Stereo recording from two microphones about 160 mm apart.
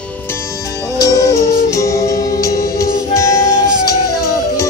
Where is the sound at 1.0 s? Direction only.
20° left (ahead or behind).